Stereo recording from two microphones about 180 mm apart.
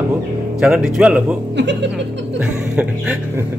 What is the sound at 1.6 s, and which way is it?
Music, 75° right (ahead or behind).